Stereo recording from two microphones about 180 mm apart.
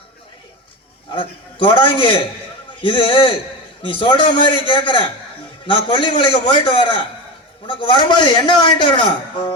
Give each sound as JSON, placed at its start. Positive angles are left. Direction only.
{"t": 1.1, "sound": "speech", "side_deg": 30}